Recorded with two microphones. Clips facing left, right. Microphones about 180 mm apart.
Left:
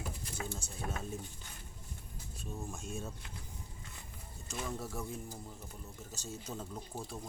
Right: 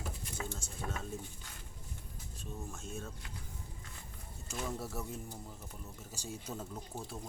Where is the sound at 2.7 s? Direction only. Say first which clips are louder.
Left 2 dB; 10° left (ahead or behind).